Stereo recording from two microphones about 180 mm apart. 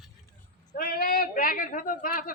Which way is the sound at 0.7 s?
55° left (ahead or behind).